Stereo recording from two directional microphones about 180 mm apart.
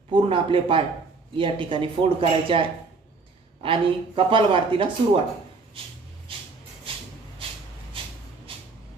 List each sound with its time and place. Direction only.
0.1 s speech: 30° right (ahead or behind)